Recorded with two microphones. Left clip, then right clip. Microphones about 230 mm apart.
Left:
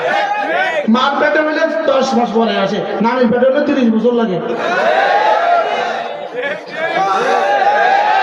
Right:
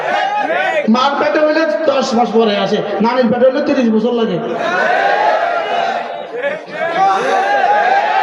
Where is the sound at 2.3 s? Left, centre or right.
Right.